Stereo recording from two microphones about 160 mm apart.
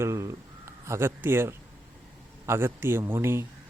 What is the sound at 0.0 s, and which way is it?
A man's voice, 20° right (ahead or behind).